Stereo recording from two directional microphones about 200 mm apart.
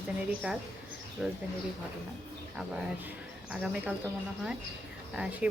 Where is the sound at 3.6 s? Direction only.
5° right (ahead or behind).